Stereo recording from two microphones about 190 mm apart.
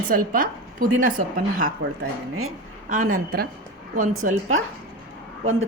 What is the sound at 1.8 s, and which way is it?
Speech, 90° right.